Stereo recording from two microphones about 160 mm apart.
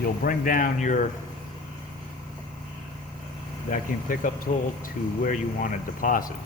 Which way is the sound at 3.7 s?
55° left (ahead or behind).